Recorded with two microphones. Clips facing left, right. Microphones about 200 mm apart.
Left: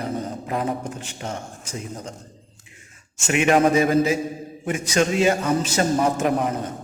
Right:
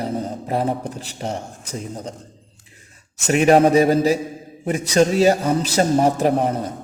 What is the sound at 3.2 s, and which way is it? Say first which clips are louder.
A man's voice: right 4 dB; 35° right (ahead or behind).